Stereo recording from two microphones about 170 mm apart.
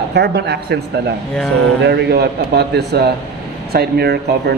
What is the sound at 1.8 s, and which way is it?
Speech, 75° right (ahead or behind).